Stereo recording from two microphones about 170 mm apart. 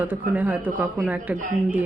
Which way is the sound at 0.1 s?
10° right (ahead or behind).